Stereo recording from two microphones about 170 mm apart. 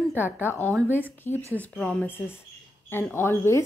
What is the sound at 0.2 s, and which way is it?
A woman's voice, 10° left (ahead or behind).